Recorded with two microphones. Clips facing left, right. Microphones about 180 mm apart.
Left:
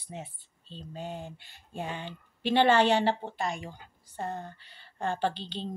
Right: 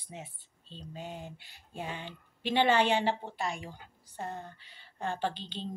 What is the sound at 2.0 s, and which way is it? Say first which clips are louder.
A woman's voice: left 4 dB; 10° right (ahead or behind).